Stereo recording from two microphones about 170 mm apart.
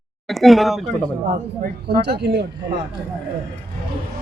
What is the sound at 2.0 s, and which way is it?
Speech, 75° right (ahead or behind).